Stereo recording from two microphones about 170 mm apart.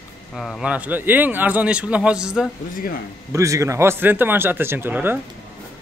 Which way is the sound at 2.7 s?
55° left (ahead or behind).